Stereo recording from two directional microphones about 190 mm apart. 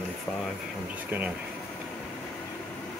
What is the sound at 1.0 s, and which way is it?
Speech, 10° right (ahead or behind).